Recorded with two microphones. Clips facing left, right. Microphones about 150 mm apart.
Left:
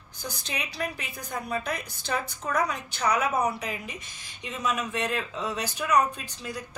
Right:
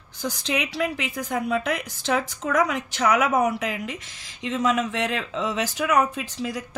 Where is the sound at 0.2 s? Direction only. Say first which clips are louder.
Right 9 dB; 90° right.